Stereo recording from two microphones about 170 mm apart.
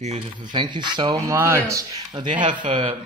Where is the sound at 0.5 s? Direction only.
25° right (ahead or behind).